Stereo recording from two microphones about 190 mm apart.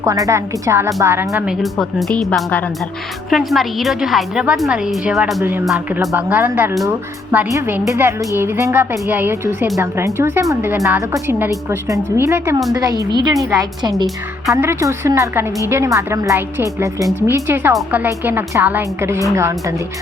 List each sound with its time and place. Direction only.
0.0 s a woman's voice: 15° right (ahead or behind)